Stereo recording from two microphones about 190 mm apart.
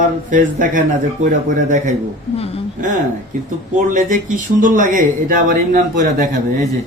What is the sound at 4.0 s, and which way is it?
Speech, 45° right (ahead or behind).